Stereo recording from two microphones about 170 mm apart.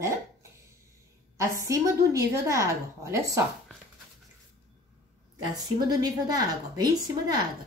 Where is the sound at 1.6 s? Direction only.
20° right (ahead or behind).